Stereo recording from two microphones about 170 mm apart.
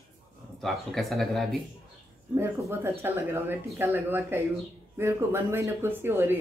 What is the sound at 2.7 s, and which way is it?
Speech, 15° right (ahead or behind).